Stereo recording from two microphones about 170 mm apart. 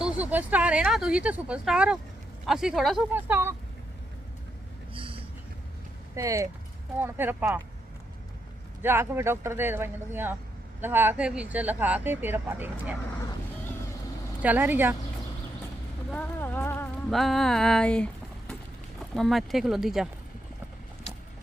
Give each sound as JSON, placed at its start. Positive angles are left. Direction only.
{"t": 0.0, "sound": "speech", "side_deg": -10}
{"t": 6.1, "sound": "speech", "side_deg": -20}
{"t": 8.8, "sound": "speech", "side_deg": -15}
{"t": 14.4, "sound": "speech", "side_deg": -10}
{"t": 16.0, "sound": "speech", "side_deg": 10}
{"t": 17.1, "sound": "speech", "side_deg": 0}